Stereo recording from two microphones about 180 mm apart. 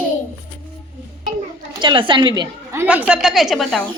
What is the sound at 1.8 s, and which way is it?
A woman's voice, 30° right (ahead or behind).